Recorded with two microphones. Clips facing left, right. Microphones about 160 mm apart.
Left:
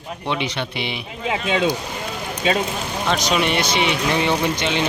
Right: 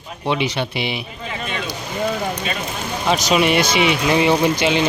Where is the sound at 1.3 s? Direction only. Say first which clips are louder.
Left 7 dB; 90° left.